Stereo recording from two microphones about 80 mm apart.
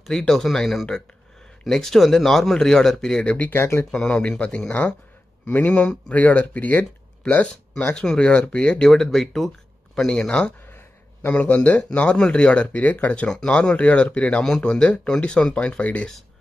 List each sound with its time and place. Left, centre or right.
0.3 s speech: centre
3.4 s speech: left
3.9 s speech: centre
5.8 s speech: centre
7.8 s speech: centre